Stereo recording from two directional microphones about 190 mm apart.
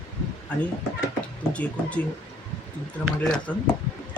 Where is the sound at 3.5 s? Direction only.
5° left (ahead or behind).